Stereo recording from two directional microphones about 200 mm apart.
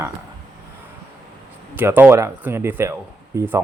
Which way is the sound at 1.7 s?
10° right (ahead or behind).